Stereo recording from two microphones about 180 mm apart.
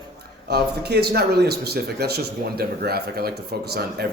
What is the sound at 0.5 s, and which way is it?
A man's voice, 65° right (ahead or behind).